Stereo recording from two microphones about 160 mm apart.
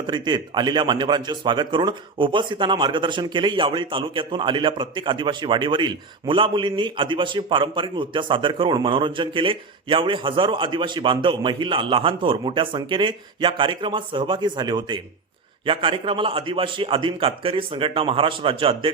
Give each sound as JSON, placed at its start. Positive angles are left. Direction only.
{"t": 0.1, "sound": "speech", "side_deg": -30}